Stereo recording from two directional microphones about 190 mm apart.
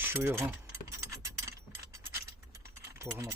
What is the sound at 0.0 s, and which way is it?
Speech, 10° right (ahead or behind).